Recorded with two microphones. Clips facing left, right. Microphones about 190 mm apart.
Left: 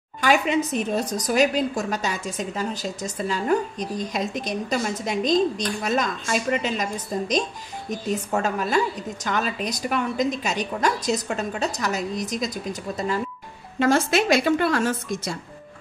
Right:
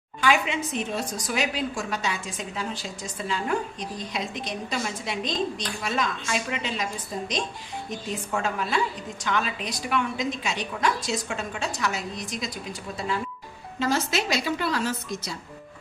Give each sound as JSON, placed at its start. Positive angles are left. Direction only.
{"t": 0.2, "sound": "a sound", "side_deg": 40}
{"t": 0.7, "sound": "a woman's voice", "side_deg": 40}
{"t": 13.7, "sound": "a woman's voice", "side_deg": 55}